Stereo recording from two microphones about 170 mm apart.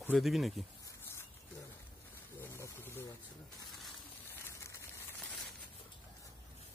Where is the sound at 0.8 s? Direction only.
15° left (ahead or behind).